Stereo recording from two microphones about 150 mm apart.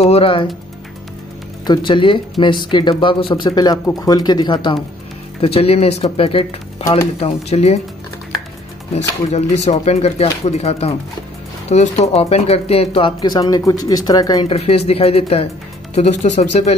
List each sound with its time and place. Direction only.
0.0 s speech: 40° left (ahead or behind)
1.7 s speech: 30° left (ahead or behind)
5.4 s speech: 40° left (ahead or behind)
8.9 s speech: 45° left (ahead or behind)
13.2 s speech: 25° left (ahead or behind)
14.5 s speech: 40° left (ahead or behind)